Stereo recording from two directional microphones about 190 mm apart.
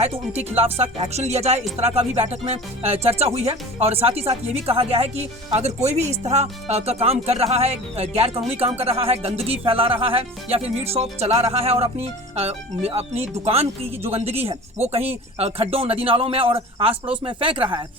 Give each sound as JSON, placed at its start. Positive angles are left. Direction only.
{"t": 0.0, "sound": "speech", "side_deg": -30}